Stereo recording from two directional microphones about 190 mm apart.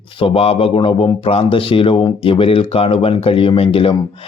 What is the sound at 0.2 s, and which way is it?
Speech, 30° left (ahead or behind).